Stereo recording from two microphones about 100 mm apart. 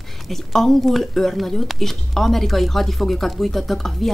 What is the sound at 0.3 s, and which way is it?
Speech, 5° left (ahead or behind).